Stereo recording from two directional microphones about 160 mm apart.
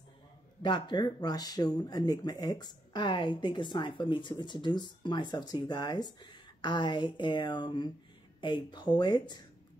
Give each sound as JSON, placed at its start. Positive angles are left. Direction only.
{"t": 0.6, "sound": "speech", "side_deg": 30}